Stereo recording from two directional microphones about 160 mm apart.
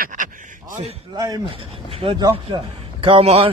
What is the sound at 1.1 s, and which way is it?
A man's voice, 25° right (ahead or behind).